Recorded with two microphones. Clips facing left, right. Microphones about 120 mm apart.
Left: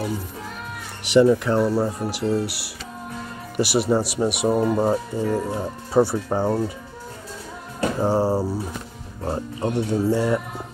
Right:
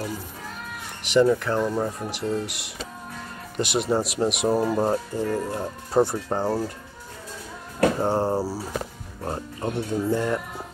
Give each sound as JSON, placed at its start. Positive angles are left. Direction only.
{"t": 1.0, "sound": "speech", "side_deg": 10}
{"t": 8.0, "sound": "speech", "side_deg": 0}
{"t": 9.2, "sound": "speech", "side_deg": 10}